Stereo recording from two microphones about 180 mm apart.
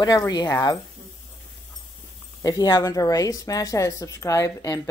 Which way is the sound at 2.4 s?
20° left (ahead or behind).